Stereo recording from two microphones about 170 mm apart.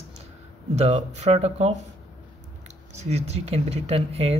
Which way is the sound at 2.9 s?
40° right (ahead or behind).